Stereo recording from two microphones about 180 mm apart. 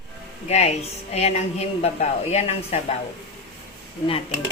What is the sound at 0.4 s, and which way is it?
A woman's voice, 35° left (ahead or behind).